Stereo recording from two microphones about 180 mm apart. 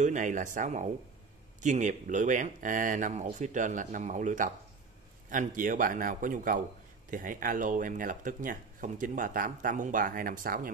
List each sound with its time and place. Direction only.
0.0 s speech: 45° right (ahead or behind)